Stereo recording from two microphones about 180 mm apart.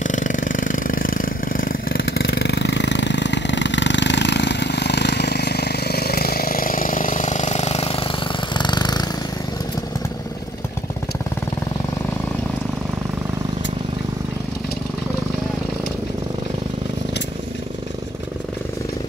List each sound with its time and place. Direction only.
0.0 s vehicle: 45° left (ahead or behind); by 9.0 s 25° left (ahead or behind)